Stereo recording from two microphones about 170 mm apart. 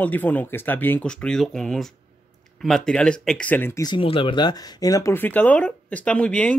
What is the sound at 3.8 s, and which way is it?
Speech, 30° left (ahead or behind).